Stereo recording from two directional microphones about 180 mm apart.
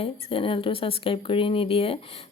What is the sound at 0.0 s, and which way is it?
A woman's voice, 30° left (ahead or behind).